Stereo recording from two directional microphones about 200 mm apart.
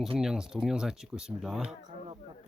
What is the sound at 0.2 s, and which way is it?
Speech, 5° right (ahead or behind).